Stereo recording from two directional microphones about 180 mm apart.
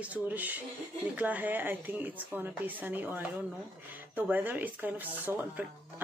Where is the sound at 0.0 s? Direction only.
10° right (ahead or behind).